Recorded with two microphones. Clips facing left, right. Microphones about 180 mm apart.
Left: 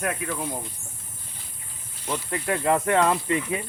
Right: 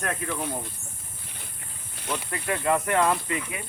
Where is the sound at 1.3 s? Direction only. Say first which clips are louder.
Right 2 dB; 65° right (ahead or behind).